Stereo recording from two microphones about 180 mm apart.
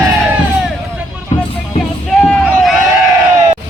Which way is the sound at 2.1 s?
5° left (ahead or behind).